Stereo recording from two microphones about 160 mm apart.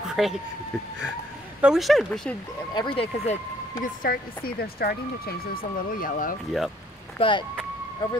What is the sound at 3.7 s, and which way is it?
Speech, 65° left (ahead or behind).